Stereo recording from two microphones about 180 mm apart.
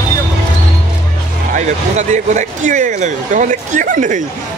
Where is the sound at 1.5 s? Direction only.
40° right (ahead or behind).